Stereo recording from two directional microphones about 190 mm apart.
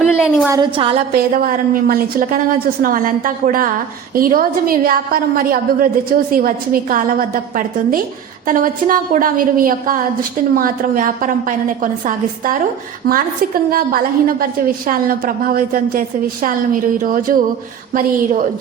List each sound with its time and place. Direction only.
0.0 s a sound: centre (ahead or behind)
0.4 s a woman's voice: 20° right (ahead or behind)
1.1 s a woman's voice: 50° right (ahead or behind)